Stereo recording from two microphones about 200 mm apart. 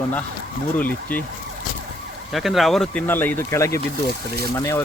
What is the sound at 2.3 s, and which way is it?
Speech, centre (ahead or behind).